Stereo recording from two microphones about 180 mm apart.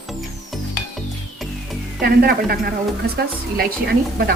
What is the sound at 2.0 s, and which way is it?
A woman's voice, 55° right (ahead or behind).